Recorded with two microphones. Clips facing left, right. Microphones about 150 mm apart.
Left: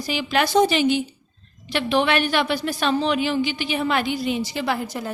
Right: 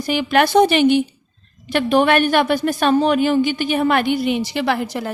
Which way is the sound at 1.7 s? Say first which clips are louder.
Right 5 dB; 50° right (ahead or behind).